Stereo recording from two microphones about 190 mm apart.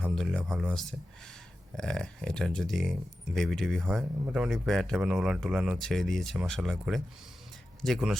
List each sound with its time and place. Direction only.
0.1 s speech: 5° left (ahead or behind)